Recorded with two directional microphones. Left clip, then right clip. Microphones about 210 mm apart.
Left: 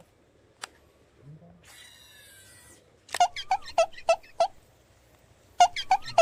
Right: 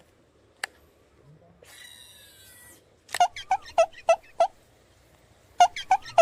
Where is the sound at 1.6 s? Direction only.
20° right (ahead or behind).